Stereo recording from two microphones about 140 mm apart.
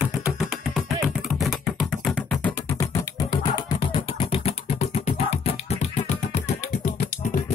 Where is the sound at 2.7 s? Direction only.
25° left (ahead or behind); by 4.9 s 45° left (ahead or behind).